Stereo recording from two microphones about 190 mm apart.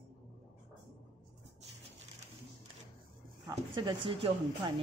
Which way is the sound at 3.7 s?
25° right (ahead or behind).